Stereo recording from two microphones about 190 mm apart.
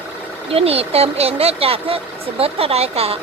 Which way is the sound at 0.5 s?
30° right (ahead or behind).